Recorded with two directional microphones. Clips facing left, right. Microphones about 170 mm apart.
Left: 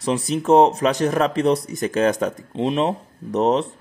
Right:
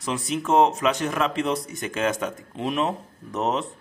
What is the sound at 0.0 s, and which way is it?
Speech, 35° left (ahead or behind).